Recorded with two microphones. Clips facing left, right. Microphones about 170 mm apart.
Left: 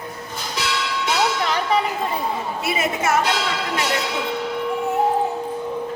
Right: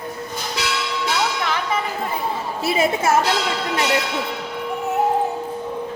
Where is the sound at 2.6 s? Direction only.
30° right (ahead or behind).